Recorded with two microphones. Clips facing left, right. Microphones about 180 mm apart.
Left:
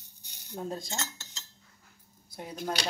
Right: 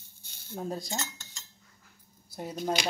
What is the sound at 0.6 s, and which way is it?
Cutlery, 5° right (ahead or behind).